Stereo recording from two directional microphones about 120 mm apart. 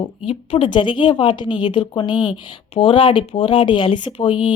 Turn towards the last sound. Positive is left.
turn(degrees=45)  # may be behind; listen again after turning